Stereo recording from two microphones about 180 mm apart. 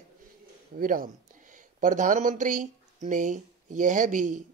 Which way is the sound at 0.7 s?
50° right (ahead or behind).